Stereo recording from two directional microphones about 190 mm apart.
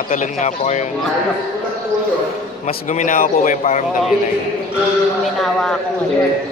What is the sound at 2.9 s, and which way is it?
Speech, 40° left (ahead or behind).